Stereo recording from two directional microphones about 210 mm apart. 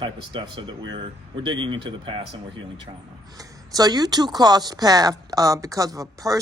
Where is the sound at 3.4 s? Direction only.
20° right (ahead or behind).